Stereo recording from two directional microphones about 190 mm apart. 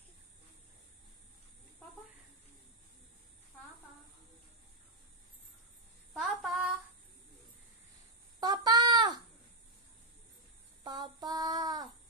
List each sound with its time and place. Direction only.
6.1 s child singing: centre (ahead or behind)
8.4 s a sound: 20° right (ahead or behind)
10.8 s child singing: 20° right (ahead or behind)